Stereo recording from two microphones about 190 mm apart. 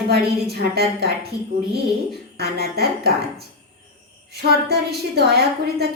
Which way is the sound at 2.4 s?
55° right (ahead or behind).